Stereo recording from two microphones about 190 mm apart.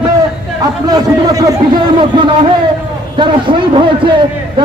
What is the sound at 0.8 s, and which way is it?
Chatter, 20° right (ahead or behind).